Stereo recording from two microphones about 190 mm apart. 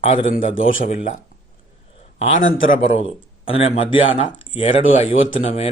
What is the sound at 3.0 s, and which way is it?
Speech, 30° left (ahead or behind).